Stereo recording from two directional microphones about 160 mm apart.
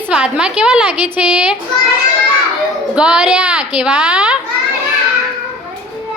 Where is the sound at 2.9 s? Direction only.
5° right (ahead or behind).